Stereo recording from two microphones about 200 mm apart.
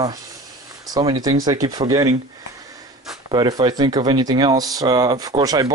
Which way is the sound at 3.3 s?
20° right (ahead or behind).